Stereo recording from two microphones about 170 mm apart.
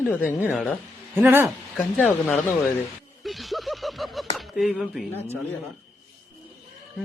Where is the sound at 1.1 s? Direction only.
15° right (ahead or behind).